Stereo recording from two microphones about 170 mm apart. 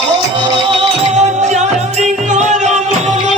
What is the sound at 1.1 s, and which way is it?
Music, 40° right (ahead or behind).